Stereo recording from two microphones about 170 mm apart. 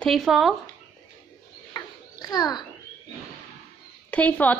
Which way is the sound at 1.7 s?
25° left (ahead or behind).